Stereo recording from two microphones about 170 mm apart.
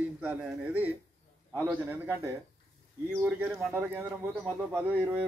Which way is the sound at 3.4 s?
10° right (ahead or behind).